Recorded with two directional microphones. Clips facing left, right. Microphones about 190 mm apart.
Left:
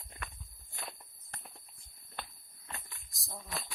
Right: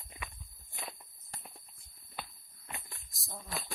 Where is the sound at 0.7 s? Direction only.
10° right (ahead or behind).